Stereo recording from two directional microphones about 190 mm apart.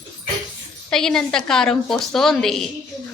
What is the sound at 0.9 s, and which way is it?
A woman's voice, 5° left (ahead or behind).